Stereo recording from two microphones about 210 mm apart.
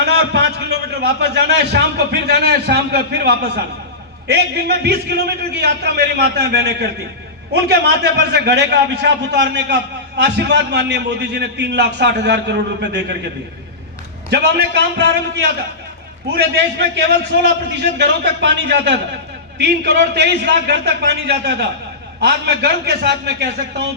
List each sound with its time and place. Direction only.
0.0 s a man's voice: 50° right (ahead or behind)
14.3 s a man's voice: 55° right (ahead or behind)